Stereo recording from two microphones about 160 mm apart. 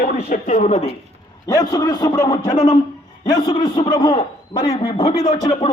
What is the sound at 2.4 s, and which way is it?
A man's voice, 40° left (ahead or behind).